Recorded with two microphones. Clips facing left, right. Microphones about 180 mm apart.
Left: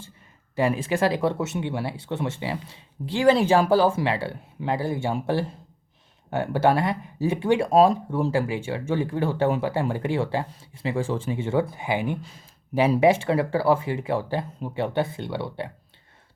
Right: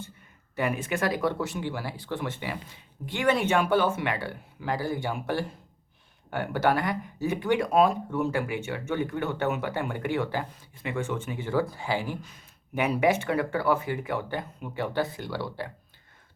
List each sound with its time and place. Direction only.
0.5 s speech: 30° left (ahead or behind)